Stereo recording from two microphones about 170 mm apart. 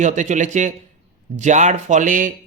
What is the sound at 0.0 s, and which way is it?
Speech, 45° right (ahead or behind).